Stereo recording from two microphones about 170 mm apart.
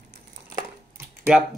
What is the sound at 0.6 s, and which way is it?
Crushing, 15° right (ahead or behind).